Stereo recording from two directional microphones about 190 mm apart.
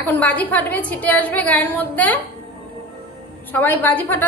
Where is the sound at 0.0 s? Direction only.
10° left (ahead or behind).